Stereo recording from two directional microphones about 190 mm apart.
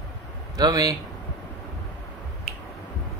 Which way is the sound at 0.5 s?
20° right (ahead or behind).